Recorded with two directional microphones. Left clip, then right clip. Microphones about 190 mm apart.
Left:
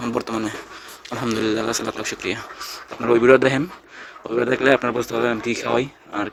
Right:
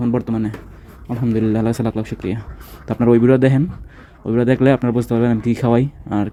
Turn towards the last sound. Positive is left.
turn(degrees=-15)  # may be behind; listen again after turning